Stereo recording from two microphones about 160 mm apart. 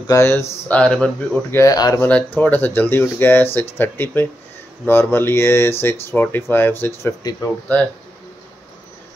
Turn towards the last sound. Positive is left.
turn(degrees=15)  # may be behind; listen again after turning